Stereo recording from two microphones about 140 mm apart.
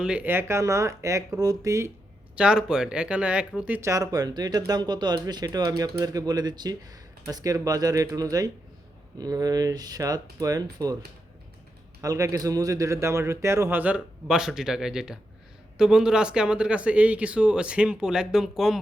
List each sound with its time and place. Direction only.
0.0 s speech: 10° right (ahead or behind)
2.3 s speech: 5° right (ahead or behind)
3.8 s speech: 20° right (ahead or behind)
12.0 s speech: 20° right (ahead or behind); by 18.8 s centre (ahead or behind)